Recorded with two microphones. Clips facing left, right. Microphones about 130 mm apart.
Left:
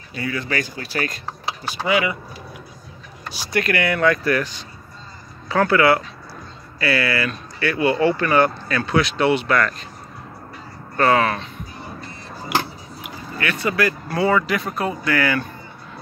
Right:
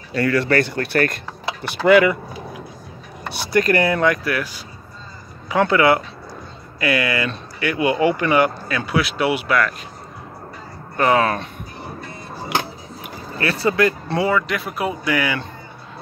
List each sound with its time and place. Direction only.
0.1 s speech: 80° right; by 2.1 s 55° right (ahead or behind)
3.5 s speech: 45° right (ahead or behind)
3.8 s speech: 30° right (ahead or behind)
4.1 s speech: 10° right (ahead or behind)
5.5 s speech: 20° right (ahead or behind)
11.0 s speech: 20° right (ahead or behind)
13.4 s speech: 35° right (ahead or behind)
14.3 s speech: centre (ahead or behind)